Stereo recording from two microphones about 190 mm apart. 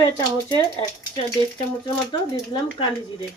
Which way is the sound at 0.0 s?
20° left (ahead or behind).